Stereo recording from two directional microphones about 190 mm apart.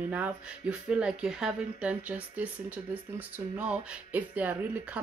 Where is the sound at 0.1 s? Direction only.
5° right (ahead or behind).